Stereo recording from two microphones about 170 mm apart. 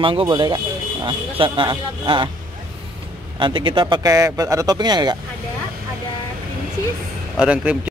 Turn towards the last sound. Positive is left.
turn(degrees=-5)  # may be behind; listen again after turning